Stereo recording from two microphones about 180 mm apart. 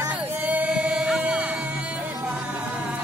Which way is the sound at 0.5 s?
5° right (ahead or behind).